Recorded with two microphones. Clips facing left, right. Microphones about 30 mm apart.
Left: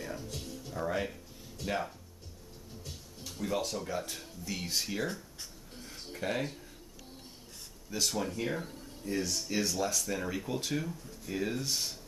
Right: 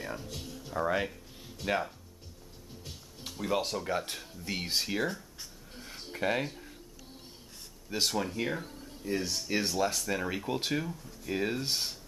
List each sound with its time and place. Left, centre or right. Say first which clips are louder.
0.0 s speech: right 1 dB; right
3.3 s speech: right 2 dB; right
4.7 s speech: right 3 dB; right
5.0 s writing: right 3 dB; centre
5.8 s a sound: right 4 dB; right
6.4 s speech: even; centre
7.9 s speech: right 2 dB; right
8.2 s speech: right 1 dB; centre
9.5 s speech: right 4 dB; right